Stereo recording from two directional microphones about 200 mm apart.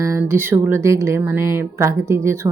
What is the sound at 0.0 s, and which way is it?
Speech, 15° right (ahead or behind).